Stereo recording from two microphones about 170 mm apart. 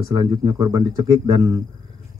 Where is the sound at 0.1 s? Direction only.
25° right (ahead or behind).